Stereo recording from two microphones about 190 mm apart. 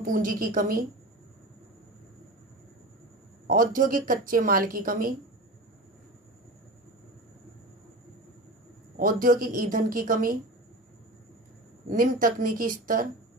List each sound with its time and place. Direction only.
0.0 s speech: 45° right (ahead or behind)
3.5 s speech: 45° right (ahead or behind)
8.9 s speech: 45° right (ahead or behind)
11.9 s speech: 45° right (ahead or behind)